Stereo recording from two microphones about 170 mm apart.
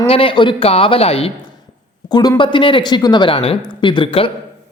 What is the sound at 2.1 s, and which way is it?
A man's voice, 25° left (ahead or behind).